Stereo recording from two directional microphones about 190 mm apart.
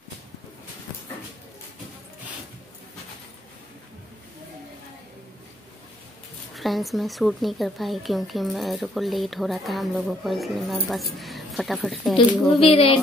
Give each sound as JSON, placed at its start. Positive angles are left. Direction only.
{"t": 6.5, "sound": "speech", "side_deg": 0}
{"t": 12.5, "sound": "speech", "side_deg": 30}